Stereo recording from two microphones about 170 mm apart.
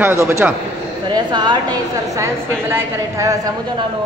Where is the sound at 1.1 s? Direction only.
25° right (ahead or behind).